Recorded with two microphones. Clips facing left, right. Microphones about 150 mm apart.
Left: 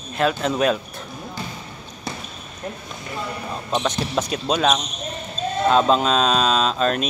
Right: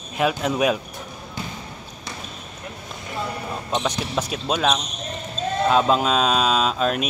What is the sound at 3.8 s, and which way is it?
Speech, 5° right (ahead or behind).